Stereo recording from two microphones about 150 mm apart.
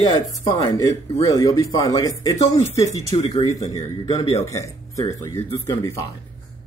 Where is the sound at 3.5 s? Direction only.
25° left (ahead or behind).